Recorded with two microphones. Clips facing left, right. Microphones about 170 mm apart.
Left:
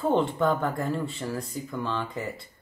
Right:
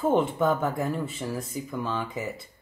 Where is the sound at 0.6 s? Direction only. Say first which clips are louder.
Even; 5° right (ahead or behind).